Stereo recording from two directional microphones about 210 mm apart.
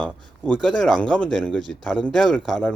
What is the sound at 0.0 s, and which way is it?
Speech, 5° left (ahead or behind).